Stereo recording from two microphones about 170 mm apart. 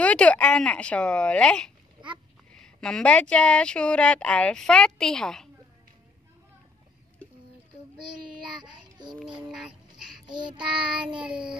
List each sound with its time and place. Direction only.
0.0 s speech: 10° left (ahead or behind)
8.6 s child singing: 25° right (ahead or behind)
9.2 s a sound: 5° right (ahead or behind)
10.8 s speech: 5° right (ahead or behind)